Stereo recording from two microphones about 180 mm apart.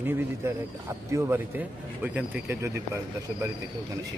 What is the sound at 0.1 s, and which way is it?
A man's voice, 15° right (ahead or behind).